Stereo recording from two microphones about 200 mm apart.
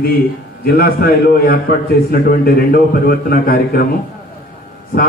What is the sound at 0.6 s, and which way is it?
A man's voice, 50° left (ahead or behind).